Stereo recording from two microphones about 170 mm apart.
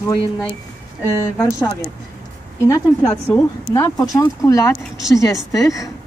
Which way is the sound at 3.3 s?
20° left (ahead or behind).